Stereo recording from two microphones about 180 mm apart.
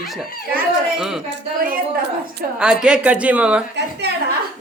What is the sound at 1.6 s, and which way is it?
Speech, 50° right (ahead or behind).